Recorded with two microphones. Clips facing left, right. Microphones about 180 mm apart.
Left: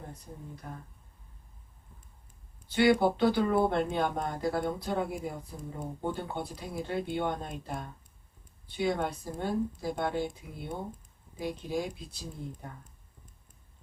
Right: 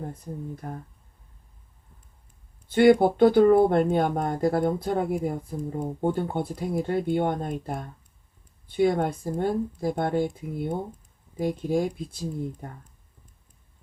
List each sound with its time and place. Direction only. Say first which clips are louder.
0.5 s speech: right 7 dB; 50° right (ahead or behind)
2.6 s speech: right 7 dB; 50° right (ahead or behind)